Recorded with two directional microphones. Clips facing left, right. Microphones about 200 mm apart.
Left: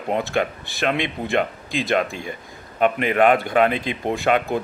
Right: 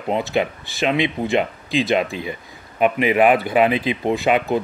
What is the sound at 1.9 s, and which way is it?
Speech, 50° left (ahead or behind).